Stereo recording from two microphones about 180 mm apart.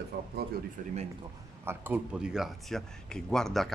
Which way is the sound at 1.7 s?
10° right (ahead or behind).